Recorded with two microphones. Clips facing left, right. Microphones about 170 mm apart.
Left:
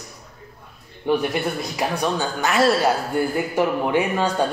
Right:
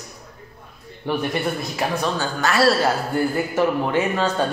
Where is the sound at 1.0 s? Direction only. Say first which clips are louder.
Left 2 dB; 15° left (ahead or behind).